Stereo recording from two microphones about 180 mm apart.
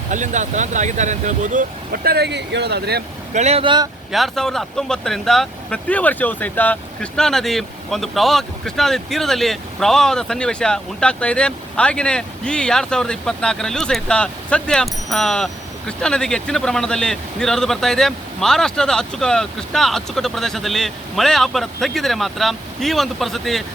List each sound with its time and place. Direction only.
0.1 s speech: 40° right (ahead or behind); by 3.0 s 65° right (ahead or behind)
3.3 s speech: 35° right (ahead or behind)
4.1 s speech: centre (ahead or behind)